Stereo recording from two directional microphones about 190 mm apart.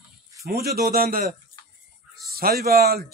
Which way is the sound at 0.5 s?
55° right (ahead or behind).